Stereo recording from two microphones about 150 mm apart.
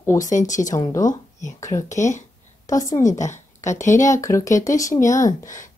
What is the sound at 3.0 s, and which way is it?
Speech, 55° left (ahead or behind).